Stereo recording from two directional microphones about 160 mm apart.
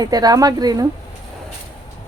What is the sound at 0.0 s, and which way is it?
Speech, 25° right (ahead or behind).